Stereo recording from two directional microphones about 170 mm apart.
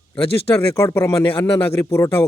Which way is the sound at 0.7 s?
15° left (ahead or behind).